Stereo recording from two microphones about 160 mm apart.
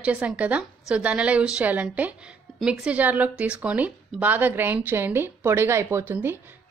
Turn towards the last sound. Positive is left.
turn(degrees=-15)  # may be behind; listen again after turning